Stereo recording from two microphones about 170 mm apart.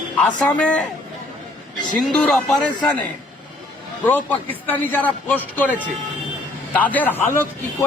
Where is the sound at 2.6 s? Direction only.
25° left (ahead or behind).